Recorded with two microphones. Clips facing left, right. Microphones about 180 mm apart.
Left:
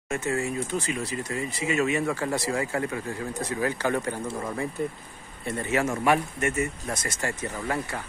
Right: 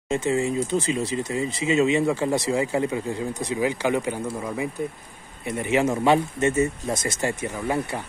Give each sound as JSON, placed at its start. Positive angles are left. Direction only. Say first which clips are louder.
{"t": 0.1, "sound": "speech", "louder": "right 5 dB", "side_deg": -20}